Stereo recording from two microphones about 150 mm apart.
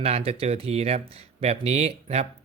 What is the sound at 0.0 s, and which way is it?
Speech, 40° right (ahead or behind).